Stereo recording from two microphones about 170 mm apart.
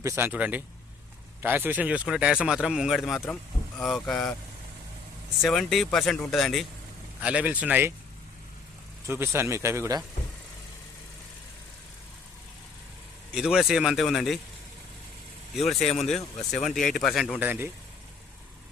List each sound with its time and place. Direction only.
0.0 s speech: 15° right (ahead or behind); by 4.4 s 5° left (ahead or behind)
5.4 s speech: centre (ahead or behind)
9.0 s speech: 15° right (ahead or behind)
13.3 s speech: 5° right (ahead or behind)
15.5 s speech: centre (ahead or behind)
17.4 s speech: 10° right (ahead or behind)